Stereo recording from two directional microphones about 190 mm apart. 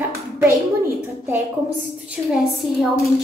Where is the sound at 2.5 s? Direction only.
Centre (ahead or behind).